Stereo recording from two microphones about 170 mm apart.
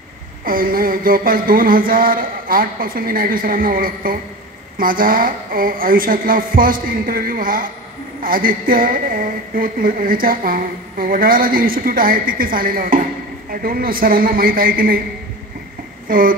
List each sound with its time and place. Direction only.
0.5 s a woman's voice: 55° right (ahead or behind)
16.1 s a woman's voice: 55° right (ahead or behind)